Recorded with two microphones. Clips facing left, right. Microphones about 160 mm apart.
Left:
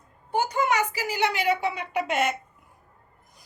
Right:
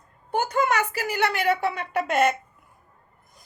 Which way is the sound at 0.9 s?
60° right (ahead or behind).